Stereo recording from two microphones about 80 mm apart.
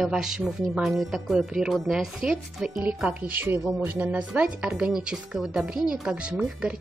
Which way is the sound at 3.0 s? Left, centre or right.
Right.